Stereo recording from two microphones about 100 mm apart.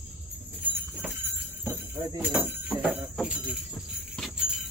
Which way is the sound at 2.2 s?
20° right (ahead or behind).